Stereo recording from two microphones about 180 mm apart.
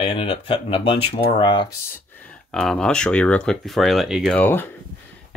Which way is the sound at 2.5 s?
5° left (ahead or behind).